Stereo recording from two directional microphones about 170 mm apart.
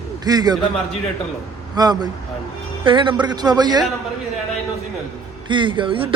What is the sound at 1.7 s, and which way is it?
Speech, 25° right (ahead or behind).